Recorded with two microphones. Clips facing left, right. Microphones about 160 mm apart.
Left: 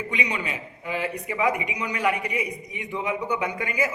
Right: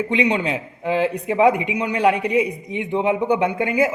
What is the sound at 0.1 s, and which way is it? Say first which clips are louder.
A man's voice: right 10 dB; 80° right.